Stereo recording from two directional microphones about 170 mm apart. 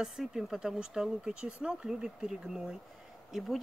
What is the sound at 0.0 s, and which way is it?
Speech, centre (ahead or behind).